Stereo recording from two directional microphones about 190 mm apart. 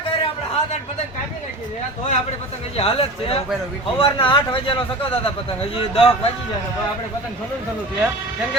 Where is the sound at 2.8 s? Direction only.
30° left (ahead or behind).